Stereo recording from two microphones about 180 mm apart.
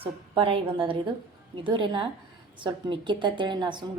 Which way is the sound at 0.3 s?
30° right (ahead or behind).